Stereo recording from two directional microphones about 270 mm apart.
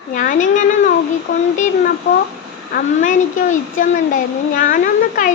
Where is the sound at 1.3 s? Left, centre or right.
Left.